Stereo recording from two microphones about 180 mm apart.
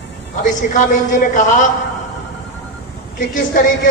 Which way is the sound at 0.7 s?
45° left (ahead or behind).